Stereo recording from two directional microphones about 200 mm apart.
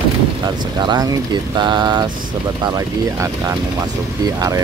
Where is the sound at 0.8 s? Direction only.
20° right (ahead or behind).